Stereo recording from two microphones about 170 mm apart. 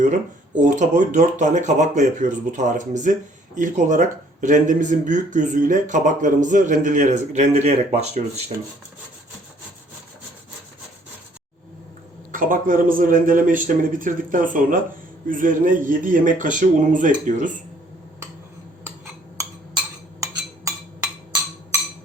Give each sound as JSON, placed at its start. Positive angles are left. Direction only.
{"t": 0.0, "sound": "speech", "side_deg": -45}
{"t": 12.3, "sound": "speech", "side_deg": -55}
{"t": 20.7, "sound": "a sound", "side_deg": -20}